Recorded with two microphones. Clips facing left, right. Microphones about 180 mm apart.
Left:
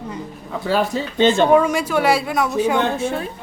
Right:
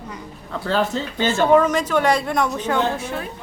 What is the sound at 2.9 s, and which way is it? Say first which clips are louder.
Speech: left 5 dB; 30° left (ahead or behind).